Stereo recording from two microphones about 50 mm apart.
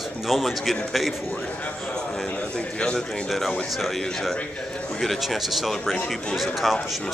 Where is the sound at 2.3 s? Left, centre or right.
Left.